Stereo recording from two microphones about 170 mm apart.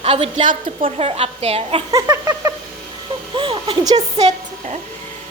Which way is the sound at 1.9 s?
20° right (ahead or behind).